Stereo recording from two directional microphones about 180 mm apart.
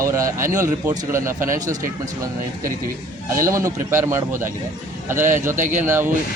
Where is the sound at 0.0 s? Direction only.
15° right (ahead or behind).